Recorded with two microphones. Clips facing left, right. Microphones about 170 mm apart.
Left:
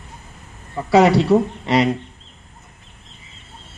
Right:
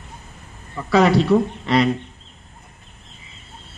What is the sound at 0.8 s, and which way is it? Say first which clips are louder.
A man's voice: left 2 dB; 20° left (ahead or behind).